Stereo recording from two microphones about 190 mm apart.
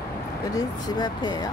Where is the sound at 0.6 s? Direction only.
20° left (ahead or behind).